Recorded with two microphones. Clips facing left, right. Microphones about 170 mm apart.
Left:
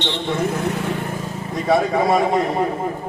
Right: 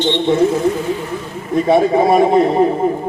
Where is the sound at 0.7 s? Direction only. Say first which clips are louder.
Right 4 dB; 65° left (ahead or behind).